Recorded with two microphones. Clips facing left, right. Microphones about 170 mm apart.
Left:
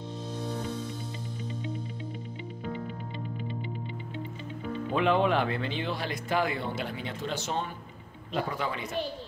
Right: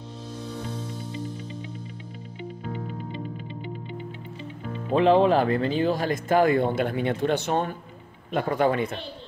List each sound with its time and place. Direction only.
4.9 s speech: 35° right (ahead or behind); by 8.9 s 55° right (ahead or behind)